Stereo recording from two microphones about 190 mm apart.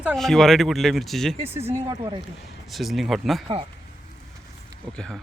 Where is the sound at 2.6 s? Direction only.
Centre (ahead or behind).